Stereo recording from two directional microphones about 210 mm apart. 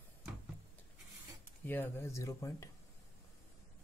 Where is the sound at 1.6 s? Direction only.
10° left (ahead or behind).